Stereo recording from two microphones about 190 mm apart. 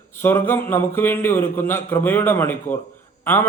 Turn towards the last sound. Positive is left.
turn(degrees=10)  # may be behind; listen again after turning